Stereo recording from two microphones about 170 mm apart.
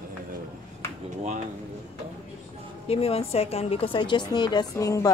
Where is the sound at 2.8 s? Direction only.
35° left (ahead or behind).